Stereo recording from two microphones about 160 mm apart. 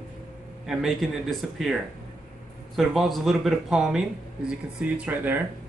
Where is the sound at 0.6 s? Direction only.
Centre (ahead or behind).